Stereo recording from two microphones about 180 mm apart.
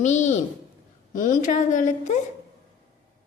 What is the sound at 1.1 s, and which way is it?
A woman's voice, 45° left (ahead or behind).